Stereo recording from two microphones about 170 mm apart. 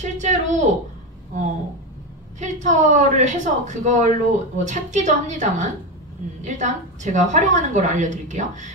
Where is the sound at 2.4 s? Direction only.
45° right (ahead or behind).